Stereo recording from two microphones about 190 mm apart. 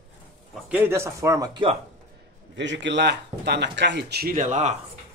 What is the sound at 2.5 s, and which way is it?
Speech, 70° right (ahead or behind).